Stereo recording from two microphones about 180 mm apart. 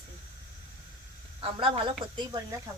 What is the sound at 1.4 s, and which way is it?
Speech, 30° right (ahead or behind).